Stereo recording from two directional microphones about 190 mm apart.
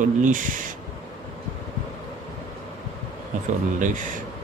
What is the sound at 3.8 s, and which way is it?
Speech, 40° right (ahead or behind).